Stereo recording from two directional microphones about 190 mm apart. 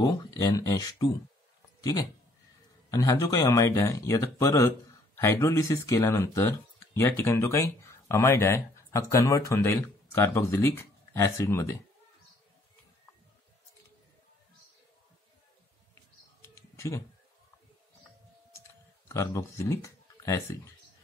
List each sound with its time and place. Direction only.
0.0 s speech: 20° left (ahead or behind)
15.9 s bird: 15° left (ahead or behind)
19.0 s speech: 15° left (ahead or behind)